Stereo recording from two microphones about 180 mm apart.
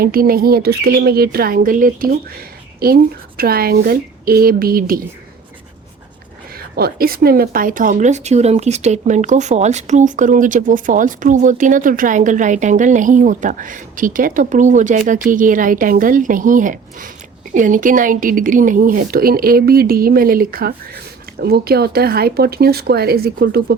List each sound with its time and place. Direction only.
0.0 s speech: 55° right (ahead or behind)
6.7 s speech: 55° right (ahead or behind)